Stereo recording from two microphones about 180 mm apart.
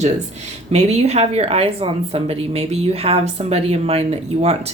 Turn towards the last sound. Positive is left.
turn(degrees=-35)  # may be behind; listen again after turning